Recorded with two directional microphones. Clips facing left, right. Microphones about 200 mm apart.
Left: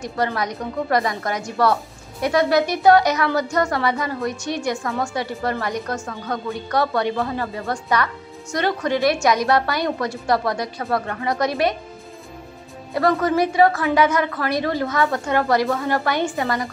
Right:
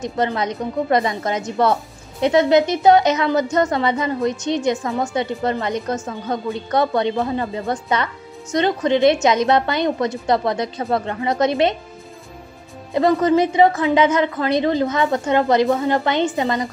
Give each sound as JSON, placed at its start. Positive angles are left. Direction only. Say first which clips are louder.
{"t": 0.0, "sound": "speech", "louder": "right 2 dB", "side_deg": -20}
{"t": 12.9, "sound": "speech", "louder": "right 3 dB", "side_deg": -20}